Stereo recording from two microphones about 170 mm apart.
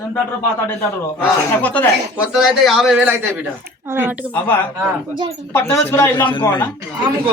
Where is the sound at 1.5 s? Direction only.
10° left (ahead or behind).